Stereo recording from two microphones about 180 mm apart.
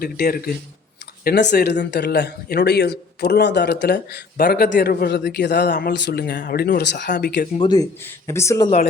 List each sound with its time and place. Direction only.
0.0 s a man's voice: 55° left (ahead or behind)
7.6 s speech: 20° left (ahead or behind)